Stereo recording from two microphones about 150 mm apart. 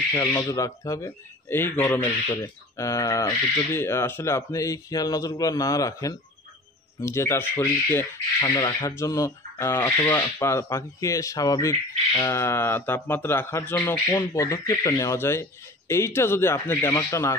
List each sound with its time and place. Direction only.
0.1 s speech: 20° left (ahead or behind)
8.4 s speech: 25° left (ahead or behind)